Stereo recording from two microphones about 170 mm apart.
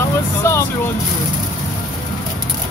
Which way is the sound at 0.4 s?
15° left (ahead or behind).